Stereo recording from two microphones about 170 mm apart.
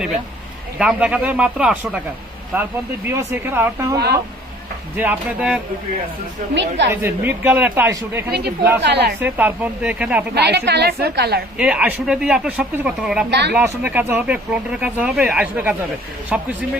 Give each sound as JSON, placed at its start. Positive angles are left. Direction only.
{"t": 0.8, "sound": "speech", "side_deg": -5}
{"t": 6.5, "sound": "speech", "side_deg": -90}
{"t": 7.0, "sound": "speech", "side_deg": -10}
{"t": 8.8, "sound": "a woman's voice", "side_deg": -75}
{"t": 9.2, "sound": "speech", "side_deg": -10}
{"t": 10.3, "sound": "a woman's voice", "side_deg": -80}
{"t": 11.5, "sound": "speech", "side_deg": -10}